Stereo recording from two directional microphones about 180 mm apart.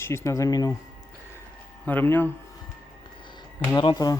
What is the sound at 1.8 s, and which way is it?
Speech, 10° left (ahead or behind).